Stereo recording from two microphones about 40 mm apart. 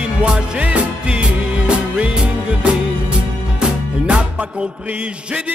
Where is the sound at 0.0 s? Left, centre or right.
Right.